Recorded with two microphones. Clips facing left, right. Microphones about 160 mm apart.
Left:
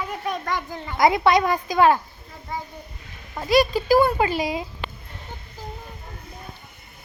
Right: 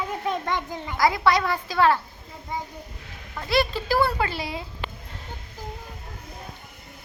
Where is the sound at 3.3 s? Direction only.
15° left (ahead or behind).